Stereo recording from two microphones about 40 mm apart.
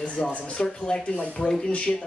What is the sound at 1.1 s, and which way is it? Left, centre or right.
Speech, left.